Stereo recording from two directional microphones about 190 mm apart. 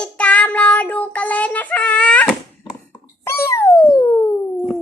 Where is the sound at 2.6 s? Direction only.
15° left (ahead or behind).